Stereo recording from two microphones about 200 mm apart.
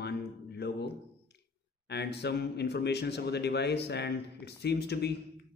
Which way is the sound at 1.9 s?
55° left (ahead or behind).